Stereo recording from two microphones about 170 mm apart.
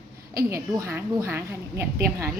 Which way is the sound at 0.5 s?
15° right (ahead or behind).